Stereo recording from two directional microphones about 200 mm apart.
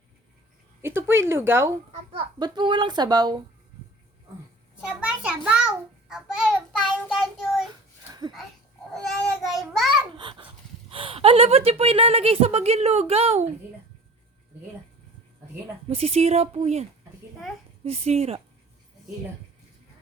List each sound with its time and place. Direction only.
0.8 s speech: 10° right (ahead or behind)
1.9 s a child's voice: 25° right (ahead or behind)
4.8 s a child's voice: 5° right (ahead or behind)
6.1 s child singing: 5° right (ahead or behind)
9.4 s child singing: centre (ahead or behind)
10.2 s speech: 25° right (ahead or behind)
15.9 s speech: 30° right (ahead or behind)
17.8 s speech: 30° right (ahead or behind)